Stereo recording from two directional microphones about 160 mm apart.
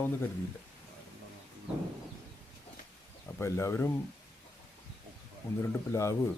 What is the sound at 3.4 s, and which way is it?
Speech, 15° left (ahead or behind).